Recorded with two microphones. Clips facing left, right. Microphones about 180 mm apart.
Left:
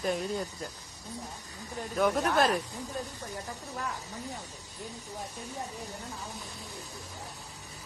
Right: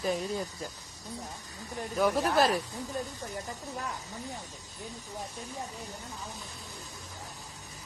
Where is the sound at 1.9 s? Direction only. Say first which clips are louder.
Even; 5° right (ahead or behind).